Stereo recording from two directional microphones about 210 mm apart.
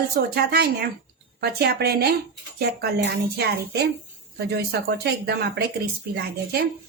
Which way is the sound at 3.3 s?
50° right (ahead or behind).